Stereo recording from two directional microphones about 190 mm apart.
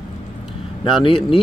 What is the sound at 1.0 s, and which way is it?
Speech, 25° left (ahead or behind).